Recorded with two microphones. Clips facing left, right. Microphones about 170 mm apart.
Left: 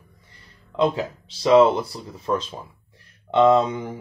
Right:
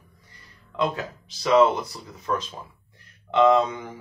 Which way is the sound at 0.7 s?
30° left (ahead or behind).